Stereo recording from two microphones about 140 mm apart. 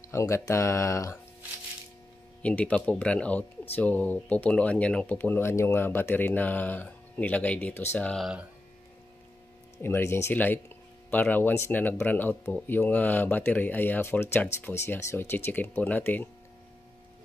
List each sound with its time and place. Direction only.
0.1 s speech: 20° left (ahead or behind)
2.4 s speech: 10° left (ahead or behind)
8.2 s speech: 5° right (ahead or behind)
9.8 s speech: 15° left (ahead or behind)